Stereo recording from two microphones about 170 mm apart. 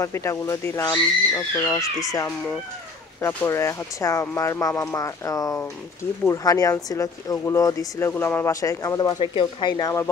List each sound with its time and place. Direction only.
0.0 s speech: 15° left (ahead or behind)
3.2 s speech: 15° left (ahead or behind)